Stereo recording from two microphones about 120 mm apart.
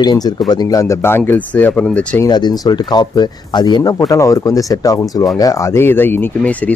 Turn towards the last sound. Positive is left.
turn(degrees=15)  # may be behind; listen again after turning